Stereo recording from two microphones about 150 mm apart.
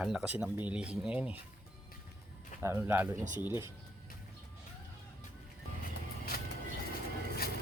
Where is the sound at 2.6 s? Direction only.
15° right (ahead or behind).